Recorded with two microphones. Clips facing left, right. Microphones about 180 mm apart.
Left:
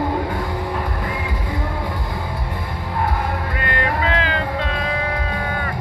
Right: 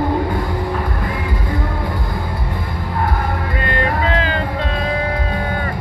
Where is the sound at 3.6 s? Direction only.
30° right (ahead or behind).